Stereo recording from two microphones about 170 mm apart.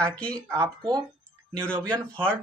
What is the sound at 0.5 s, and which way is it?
Speech, 20° right (ahead or behind).